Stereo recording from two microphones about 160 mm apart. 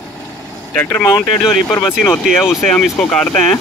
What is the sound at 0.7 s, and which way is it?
Speech, 10° left (ahead or behind).